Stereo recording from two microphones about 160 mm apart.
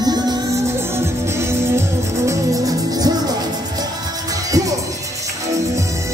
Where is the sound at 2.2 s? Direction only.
20° right (ahead or behind).